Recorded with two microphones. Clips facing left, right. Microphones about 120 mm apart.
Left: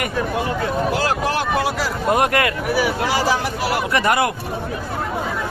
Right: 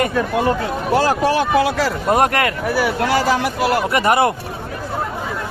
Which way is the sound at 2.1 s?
35° right (ahead or behind).